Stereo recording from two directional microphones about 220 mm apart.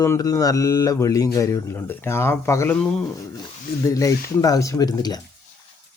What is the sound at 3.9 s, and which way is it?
Speech, 15° left (ahead or behind).